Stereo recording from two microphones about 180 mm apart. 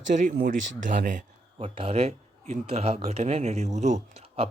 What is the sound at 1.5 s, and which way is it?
Speech, 30° right (ahead or behind).